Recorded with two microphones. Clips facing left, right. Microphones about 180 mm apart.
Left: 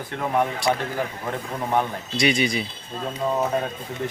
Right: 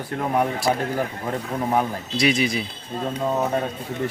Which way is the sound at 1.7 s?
5° right (ahead or behind).